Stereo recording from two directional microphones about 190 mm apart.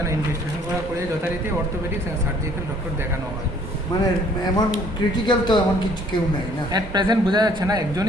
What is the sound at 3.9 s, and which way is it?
Speech, 20° left (ahead or behind).